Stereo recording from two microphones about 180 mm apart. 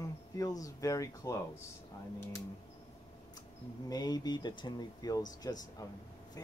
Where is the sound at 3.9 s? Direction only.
20° left (ahead or behind).